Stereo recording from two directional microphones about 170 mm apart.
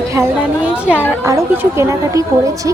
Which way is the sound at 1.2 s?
15° right (ahead or behind).